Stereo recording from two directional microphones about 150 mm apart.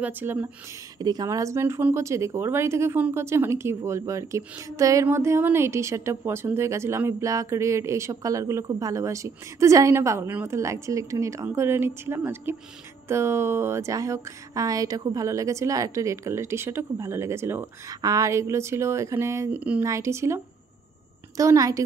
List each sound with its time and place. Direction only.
0.0 s speech: 15° right (ahead or behind)
0.9 s speech: 25° right (ahead or behind)